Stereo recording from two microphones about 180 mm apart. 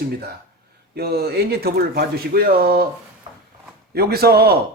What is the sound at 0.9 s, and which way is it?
Speech, 60° right (ahead or behind).